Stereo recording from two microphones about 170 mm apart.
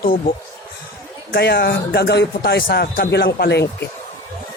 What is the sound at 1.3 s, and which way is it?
Speech, 70° left (ahead or behind).